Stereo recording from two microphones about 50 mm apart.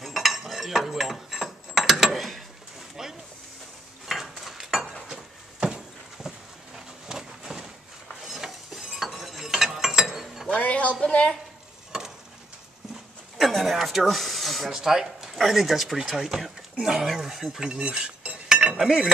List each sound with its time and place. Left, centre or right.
0.0 s cutlery: centre
3.0 s a sound: centre
4.6 s a sound: centre
5.0 s dishes: centre
6.2 s a sound: centre
9.1 s chink: centre
9.5 s mechanisms: centre
10.5 s a sound: left
11.9 s stir: centre
13.4 s speech: centre
17.6 s speech: centre
18.5 s cutlery: centre
18.8 s speech: centre